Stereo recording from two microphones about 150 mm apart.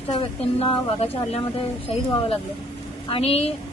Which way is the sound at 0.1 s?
35° left (ahead or behind).